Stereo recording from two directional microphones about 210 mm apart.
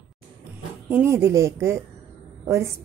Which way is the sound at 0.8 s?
10° right (ahead or behind).